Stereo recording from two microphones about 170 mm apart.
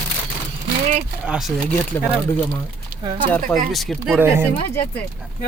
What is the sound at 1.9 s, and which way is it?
Speech, 15° left (ahead or behind).